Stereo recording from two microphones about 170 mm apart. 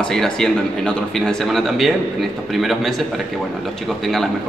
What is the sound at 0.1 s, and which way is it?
A man's voice, 5° left (ahead or behind).